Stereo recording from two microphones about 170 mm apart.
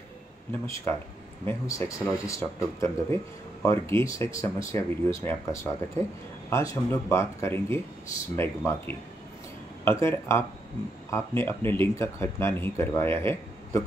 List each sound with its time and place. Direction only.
0.5 s speech: 15° left (ahead or behind)